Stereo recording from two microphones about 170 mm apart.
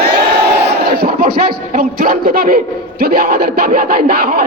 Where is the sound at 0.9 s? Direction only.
55° right (ahead or behind).